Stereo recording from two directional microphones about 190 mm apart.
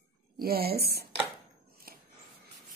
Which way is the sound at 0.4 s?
50° right (ahead or behind).